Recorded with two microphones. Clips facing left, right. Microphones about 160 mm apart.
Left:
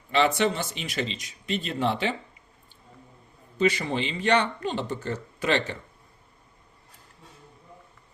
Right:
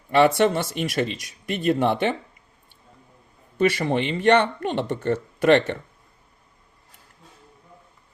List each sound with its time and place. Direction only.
0.1 s speech: 55° right (ahead or behind)
3.6 s speech: 55° right (ahead or behind)